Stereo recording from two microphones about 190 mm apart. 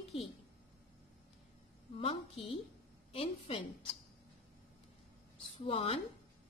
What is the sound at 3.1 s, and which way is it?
Speech, 30° left (ahead or behind).